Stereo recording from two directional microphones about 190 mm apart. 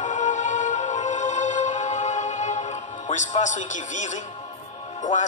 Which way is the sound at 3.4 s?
40° left (ahead or behind).